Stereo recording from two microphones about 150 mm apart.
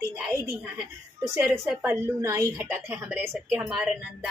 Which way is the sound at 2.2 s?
20° right (ahead or behind).